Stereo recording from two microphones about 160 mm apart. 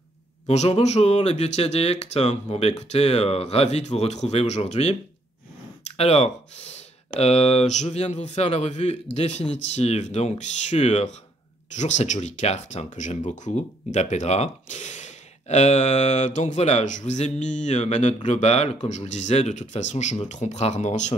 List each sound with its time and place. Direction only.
0.5 s speech: 40° left (ahead or behind)
5.9 s speech: 40° left (ahead or behind)